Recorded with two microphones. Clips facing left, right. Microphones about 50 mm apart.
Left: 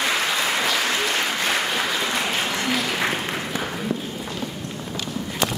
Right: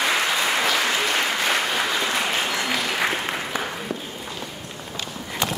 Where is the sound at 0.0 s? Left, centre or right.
Centre.